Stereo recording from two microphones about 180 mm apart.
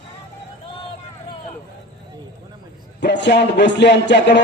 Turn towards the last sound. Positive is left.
turn(degrees=75)  # may be behind; listen again after turning